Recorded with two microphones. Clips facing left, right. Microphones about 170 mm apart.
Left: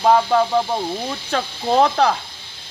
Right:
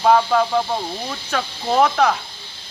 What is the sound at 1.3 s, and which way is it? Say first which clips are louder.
Speech: left 1 dB; 30° left (ahead or behind).